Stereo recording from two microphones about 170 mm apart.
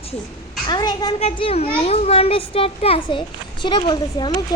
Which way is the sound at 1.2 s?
35° left (ahead or behind).